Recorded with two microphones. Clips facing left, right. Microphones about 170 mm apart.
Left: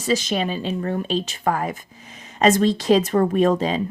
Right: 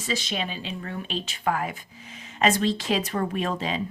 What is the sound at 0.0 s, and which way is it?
Speech, 45° left (ahead or behind).